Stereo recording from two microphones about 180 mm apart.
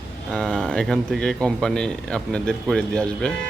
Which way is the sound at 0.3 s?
Centre (ahead or behind).